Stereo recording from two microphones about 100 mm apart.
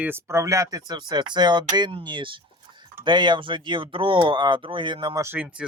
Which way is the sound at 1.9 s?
60° right (ahead or behind).